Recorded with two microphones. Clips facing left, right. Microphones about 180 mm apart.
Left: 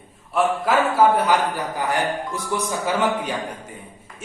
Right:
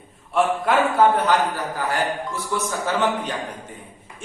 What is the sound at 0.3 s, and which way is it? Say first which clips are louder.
A man's voice: even; centre (ahead or behind).